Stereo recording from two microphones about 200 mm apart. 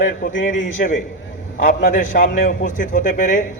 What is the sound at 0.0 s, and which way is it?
A man's voice, 40° left (ahead or behind).